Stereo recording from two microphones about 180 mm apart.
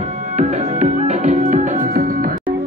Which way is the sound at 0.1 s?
45° right (ahead or behind).